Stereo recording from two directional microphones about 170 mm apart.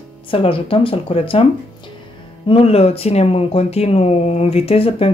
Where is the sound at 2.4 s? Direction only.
35° left (ahead or behind).